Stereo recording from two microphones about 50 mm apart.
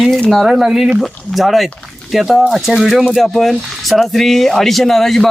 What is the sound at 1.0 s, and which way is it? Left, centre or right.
Speech, centre.